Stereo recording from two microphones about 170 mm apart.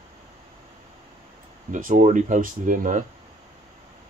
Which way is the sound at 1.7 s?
50° right (ahead or behind).